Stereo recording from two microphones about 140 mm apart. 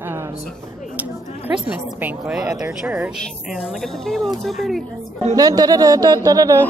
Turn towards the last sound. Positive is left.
turn(degrees=-25)  # may be behind; listen again after turning